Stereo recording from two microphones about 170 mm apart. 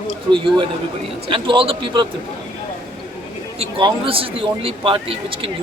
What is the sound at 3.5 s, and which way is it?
A man's voice, 30° right (ahead or behind).